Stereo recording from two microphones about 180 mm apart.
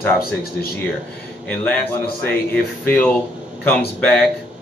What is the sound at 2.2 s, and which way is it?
Speech, 10° left (ahead or behind).